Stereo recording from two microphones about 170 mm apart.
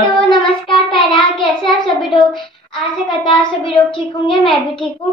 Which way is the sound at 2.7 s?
30° left (ahead or behind).